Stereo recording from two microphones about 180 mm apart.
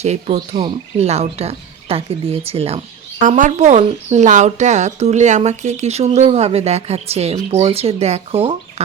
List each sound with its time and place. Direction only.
0.0 s speech: 35° right (ahead or behind)
0.3 s speech: 25° right (ahead or behind)